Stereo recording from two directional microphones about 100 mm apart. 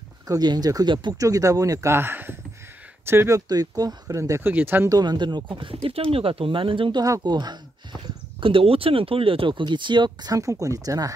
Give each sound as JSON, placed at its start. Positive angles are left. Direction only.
{"t": 0.3, "sound": "speech", "side_deg": -40}
{"t": 3.3, "sound": "speech", "side_deg": -40}
{"t": 4.4, "sound": "speech", "side_deg": -20}
{"t": 4.8, "sound": "speech", "side_deg": -45}
{"t": 6.1, "sound": "speech", "side_deg": -70}
{"t": 7.0, "sound": "speech", "side_deg": -45}
{"t": 8.4, "sound": "speech", "side_deg": -60}